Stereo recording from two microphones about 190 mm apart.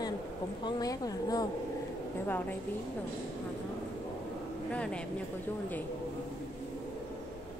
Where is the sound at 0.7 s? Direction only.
20° left (ahead or behind).